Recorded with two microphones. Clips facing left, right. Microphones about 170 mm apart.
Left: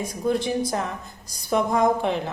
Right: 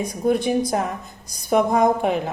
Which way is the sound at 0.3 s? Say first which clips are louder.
Right 4 dB; 20° right (ahead or behind).